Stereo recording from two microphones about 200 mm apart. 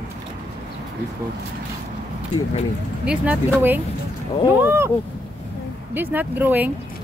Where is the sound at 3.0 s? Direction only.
5° right (ahead or behind).